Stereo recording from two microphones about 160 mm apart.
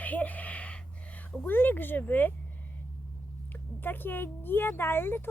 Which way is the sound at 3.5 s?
10° left (ahead or behind).